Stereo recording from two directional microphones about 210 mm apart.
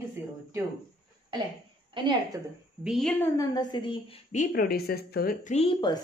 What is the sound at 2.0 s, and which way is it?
Speech, 25° right (ahead or behind).